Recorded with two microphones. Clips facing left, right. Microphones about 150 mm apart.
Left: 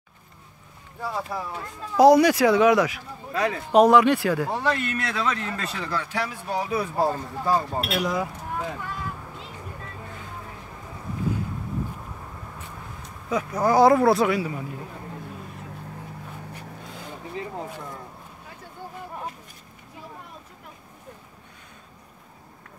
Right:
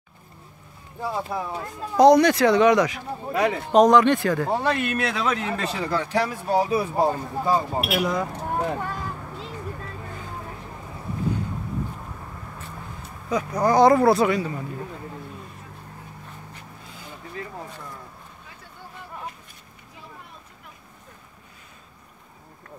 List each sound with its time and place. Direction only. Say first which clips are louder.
1.0 s speech: right 2 dB; 25° right (ahead or behind)
2.0 s speech: even; 5° left (ahead or behind)
4.5 s speech: right 2 dB; 25° right (ahead or behind)
5.2 s speech: right 2 dB; 15° right (ahead or behind)
5.6 s speech: right 4 dB; 25° right (ahead or behind)
5.9 s speech: right 5 dB; 40° right (ahead or behind); by 7.9 s 10° right (ahead or behind)
7.9 s speech: right 1 dB; centre (ahead or behind)
8.3 s speech: right 5 dB; 65° right (ahead or behind)
8.6 s a sound: right 4 dB; 50° right (ahead or behind)
13.0 s speech: right 1 dB; centre (ahead or behind)
17.3 s a sound: left 3 dB; 20° left (ahead or behind)